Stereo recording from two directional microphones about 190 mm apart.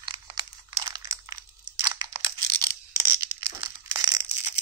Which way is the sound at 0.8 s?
15° right (ahead or behind).